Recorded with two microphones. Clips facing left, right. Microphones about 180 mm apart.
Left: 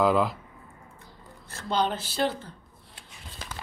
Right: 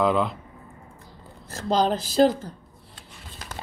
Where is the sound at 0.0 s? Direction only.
Centre (ahead or behind).